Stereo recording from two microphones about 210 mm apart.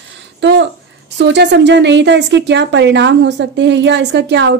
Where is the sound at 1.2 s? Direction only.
55° right (ahead or behind).